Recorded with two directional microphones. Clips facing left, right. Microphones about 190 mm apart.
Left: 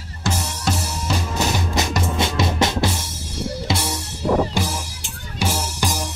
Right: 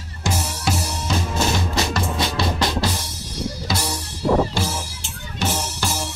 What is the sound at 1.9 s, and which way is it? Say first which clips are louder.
Music: left 2 dB; 20° left (ahead or behind).